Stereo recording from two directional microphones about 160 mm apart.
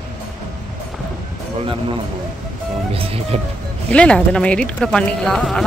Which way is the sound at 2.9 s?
35° right (ahead or behind).